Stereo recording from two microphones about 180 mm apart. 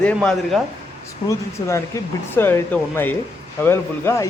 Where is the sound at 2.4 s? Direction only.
10° left (ahead or behind).